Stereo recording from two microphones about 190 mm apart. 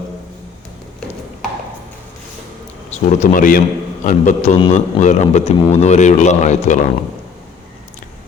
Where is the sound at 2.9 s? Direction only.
40° left (ahead or behind).